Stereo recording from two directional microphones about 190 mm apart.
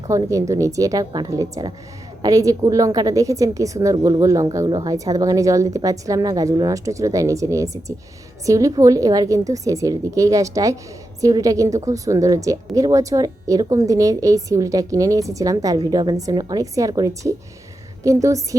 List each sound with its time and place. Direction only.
0.1 s a woman's voice: 15° right (ahead or behind)